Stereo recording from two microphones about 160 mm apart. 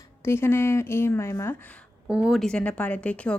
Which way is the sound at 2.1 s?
5° right (ahead or behind).